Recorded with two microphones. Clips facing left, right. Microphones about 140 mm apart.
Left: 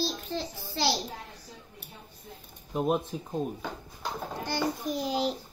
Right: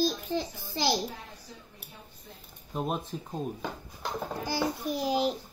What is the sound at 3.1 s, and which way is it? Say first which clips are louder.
Speech: left 1 dB; 10° left (ahead or behind).